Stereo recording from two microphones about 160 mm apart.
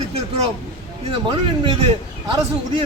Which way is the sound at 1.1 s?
30° right (ahead or behind).